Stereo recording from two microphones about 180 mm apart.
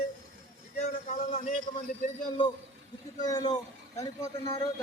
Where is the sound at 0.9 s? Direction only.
40° left (ahead or behind).